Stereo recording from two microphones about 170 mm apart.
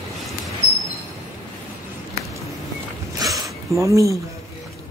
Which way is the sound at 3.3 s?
20° right (ahead or behind).